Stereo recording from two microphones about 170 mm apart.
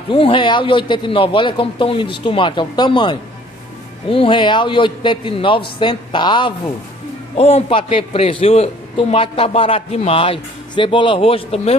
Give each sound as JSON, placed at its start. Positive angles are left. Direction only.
{"t": 0.1, "sound": "a man's voice", "side_deg": 30}